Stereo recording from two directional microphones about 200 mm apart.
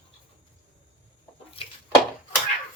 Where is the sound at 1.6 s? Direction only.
25° left (ahead or behind).